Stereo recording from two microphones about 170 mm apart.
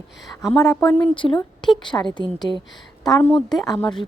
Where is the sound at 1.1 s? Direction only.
30° left (ahead or behind).